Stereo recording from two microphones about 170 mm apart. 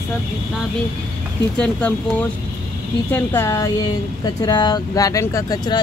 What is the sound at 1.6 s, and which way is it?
Speech, 10° left (ahead or behind).